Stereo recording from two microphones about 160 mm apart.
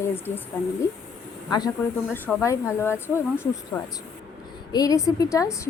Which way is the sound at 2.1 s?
10° left (ahead or behind).